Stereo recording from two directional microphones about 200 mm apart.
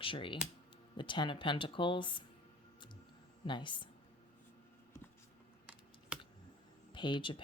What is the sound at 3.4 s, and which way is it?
Speech, 25° left (ahead or behind).